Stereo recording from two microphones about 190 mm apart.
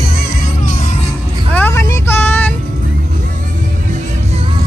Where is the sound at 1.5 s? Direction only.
10° left (ahead or behind).